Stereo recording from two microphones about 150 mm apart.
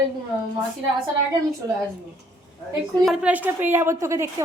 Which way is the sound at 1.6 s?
25° right (ahead or behind).